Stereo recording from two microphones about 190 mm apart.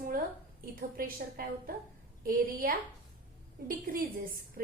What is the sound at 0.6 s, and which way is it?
A woman's voice, 50° right (ahead or behind).